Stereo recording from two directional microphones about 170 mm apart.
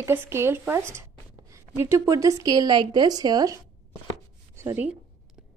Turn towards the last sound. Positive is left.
turn(degrees=-10)  # may be behind; listen again after turning